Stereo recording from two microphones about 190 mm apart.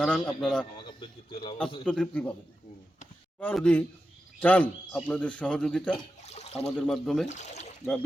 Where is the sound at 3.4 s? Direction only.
10° left (ahead or behind).